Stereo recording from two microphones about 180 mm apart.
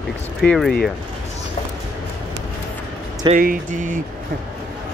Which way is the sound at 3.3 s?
50° right (ahead or behind).